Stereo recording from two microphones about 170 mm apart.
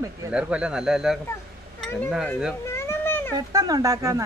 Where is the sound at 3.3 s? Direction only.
20° right (ahead or behind).